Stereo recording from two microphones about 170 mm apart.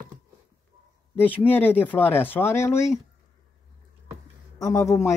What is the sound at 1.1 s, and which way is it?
Speech, 10° left (ahead or behind).